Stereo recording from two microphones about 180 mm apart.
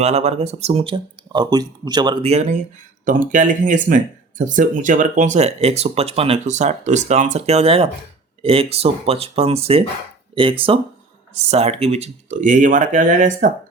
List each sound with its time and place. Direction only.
0.0 s speech: 35° right (ahead or behind)
2.2 s speech: 35° right (ahead or behind)